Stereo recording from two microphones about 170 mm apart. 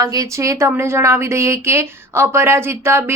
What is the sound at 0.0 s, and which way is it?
Speech, 20° right (ahead or behind).